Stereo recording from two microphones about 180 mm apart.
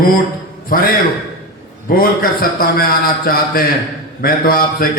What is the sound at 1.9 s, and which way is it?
A man's voice, 55° left (ahead or behind).